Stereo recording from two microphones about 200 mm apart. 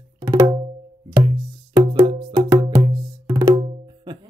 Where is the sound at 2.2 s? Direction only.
20° right (ahead or behind).